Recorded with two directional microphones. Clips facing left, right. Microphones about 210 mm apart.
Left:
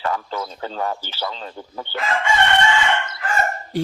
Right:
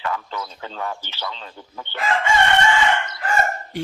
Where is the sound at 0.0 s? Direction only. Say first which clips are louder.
Left 3 dB; 40° left (ahead or behind).